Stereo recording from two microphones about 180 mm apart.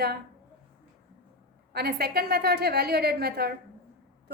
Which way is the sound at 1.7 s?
60° right (ahead or behind).